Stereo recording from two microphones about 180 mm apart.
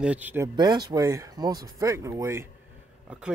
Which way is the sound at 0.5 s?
20° right (ahead or behind).